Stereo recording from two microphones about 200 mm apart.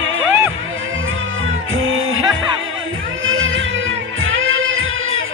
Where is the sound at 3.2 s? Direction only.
80° right.